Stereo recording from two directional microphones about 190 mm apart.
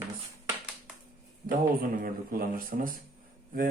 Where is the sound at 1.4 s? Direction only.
50° right (ahead or behind).